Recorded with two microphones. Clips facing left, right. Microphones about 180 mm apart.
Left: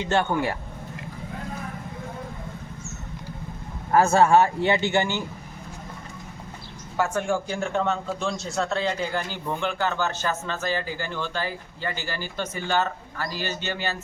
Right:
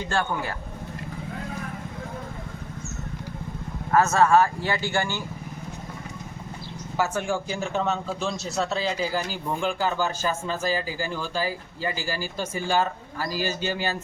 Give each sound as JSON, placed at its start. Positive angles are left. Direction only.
{"t": 0.0, "sound": "speech", "side_deg": 25}
{"t": 3.9, "sound": "speech", "side_deg": 30}
{"t": 6.9, "sound": "a man's voice", "side_deg": 0}